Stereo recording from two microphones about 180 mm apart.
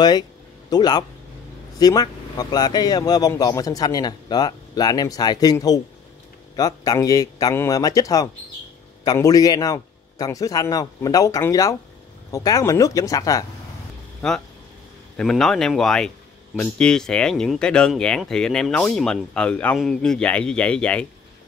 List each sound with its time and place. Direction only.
0.7 s speech: 20° left (ahead or behind)
14.2 s speech: 5° left (ahead or behind)